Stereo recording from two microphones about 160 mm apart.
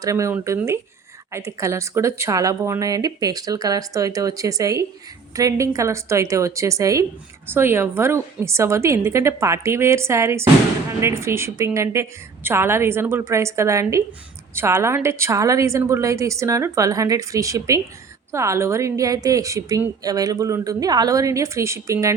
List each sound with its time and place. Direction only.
0.0 s a woman's voice: 20° right (ahead or behind)